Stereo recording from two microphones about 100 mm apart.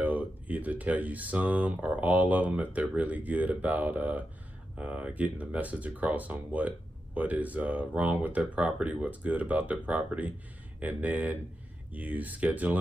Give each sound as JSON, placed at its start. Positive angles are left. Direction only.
{"t": 0.0, "sound": "speech", "side_deg": -15}